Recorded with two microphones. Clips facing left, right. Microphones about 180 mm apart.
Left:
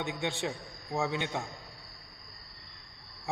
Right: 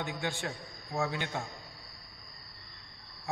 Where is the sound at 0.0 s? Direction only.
20° left (ahead or behind).